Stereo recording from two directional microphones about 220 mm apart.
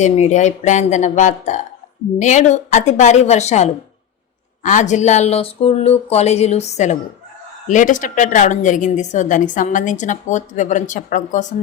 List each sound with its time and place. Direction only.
0.0 s a woman's voice: 30° left (ahead or behind)